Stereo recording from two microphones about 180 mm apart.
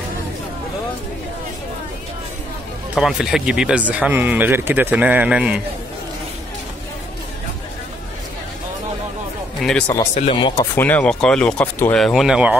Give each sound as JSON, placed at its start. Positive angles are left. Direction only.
{"t": 2.9, "sound": "speech", "side_deg": -5}
{"t": 9.6, "sound": "speech", "side_deg": 5}
{"t": 10.1, "sound": "speech", "side_deg": 30}
{"t": 10.7, "sound": "speech", "side_deg": 10}